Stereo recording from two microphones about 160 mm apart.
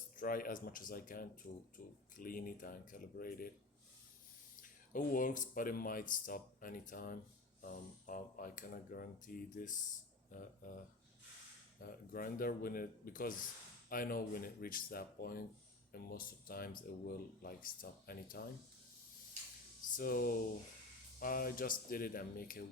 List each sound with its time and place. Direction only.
0.2 s speech: 60° left (ahead or behind)
4.6 s speech: 55° left (ahead or behind)
11.8 s speech: 65° left (ahead or behind)
20.0 s speech: 65° left (ahead or behind)